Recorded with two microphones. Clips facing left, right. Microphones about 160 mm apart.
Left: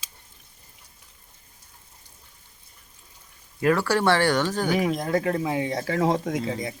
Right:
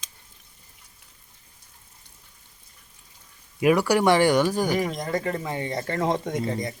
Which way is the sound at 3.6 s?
15° right (ahead or behind).